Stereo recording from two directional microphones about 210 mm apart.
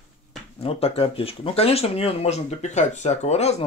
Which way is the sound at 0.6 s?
30° left (ahead or behind).